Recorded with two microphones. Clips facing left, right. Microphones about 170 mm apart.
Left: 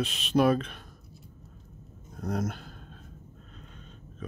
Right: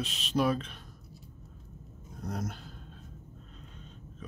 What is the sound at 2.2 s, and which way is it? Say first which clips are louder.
Speech: left 6 dB; 60° left (ahead or behind).